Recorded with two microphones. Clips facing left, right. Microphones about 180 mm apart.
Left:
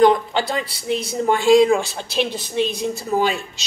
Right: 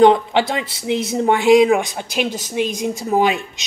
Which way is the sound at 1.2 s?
20° right (ahead or behind).